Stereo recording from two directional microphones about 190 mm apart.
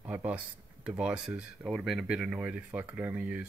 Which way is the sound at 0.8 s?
5° right (ahead or behind).